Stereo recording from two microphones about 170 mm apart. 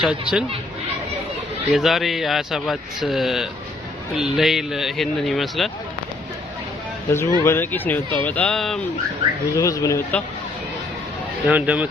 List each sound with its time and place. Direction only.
0.0 s speech: 5° right (ahead or behind)
1.7 s speech: centre (ahead or behind)
7.1 s speech: 15° left (ahead or behind)
9.5 s speech: 20° left (ahead or behind)
11.4 s speech: 10° right (ahead or behind)